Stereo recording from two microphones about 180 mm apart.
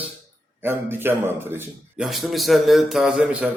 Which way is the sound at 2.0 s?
Centre (ahead or behind).